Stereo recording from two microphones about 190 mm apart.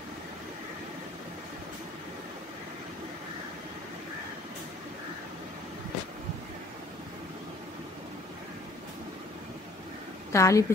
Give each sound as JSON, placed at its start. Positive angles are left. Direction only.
{"t": 10.3, "sound": "a woman's voice", "side_deg": 15}